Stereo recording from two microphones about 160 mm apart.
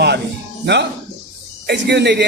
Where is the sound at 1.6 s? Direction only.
90° right.